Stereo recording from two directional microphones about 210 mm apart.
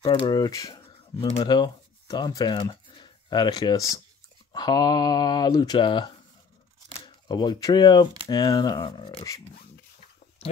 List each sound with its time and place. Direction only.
0.0 s speech: 20° left (ahead or behind)
7.2 s speech: 20° left (ahead or behind)